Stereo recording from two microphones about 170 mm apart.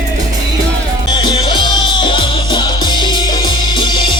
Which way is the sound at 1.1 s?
25° left (ahead or behind).